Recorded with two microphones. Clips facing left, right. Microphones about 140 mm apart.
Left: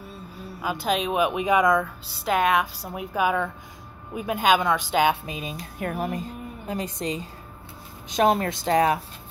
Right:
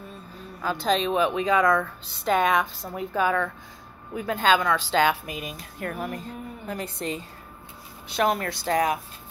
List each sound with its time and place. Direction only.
0.6 s speech: 10° left (ahead or behind)
2.2 s speech: 5° left (ahead or behind); by 8.9 s 25° left (ahead or behind)